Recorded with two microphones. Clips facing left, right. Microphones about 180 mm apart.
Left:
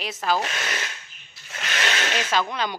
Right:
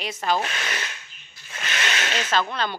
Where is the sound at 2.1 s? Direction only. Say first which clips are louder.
Right 2 dB; 10° left (ahead or behind).